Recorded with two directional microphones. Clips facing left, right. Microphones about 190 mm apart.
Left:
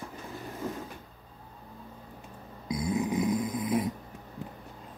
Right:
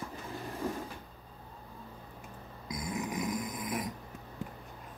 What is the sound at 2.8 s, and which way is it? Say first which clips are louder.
Snoring: left 7 dB; 25° left (ahead or behind).